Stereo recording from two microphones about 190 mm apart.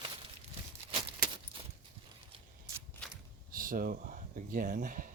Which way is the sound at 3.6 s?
45° right (ahead or behind).